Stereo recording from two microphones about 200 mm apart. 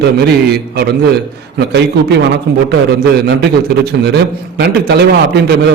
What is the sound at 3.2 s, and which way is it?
Speech, 55° right (ahead or behind).